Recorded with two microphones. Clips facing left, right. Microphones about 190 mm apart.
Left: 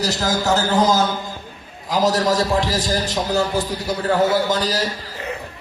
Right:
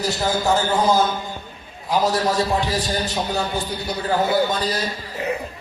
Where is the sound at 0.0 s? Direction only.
90° left.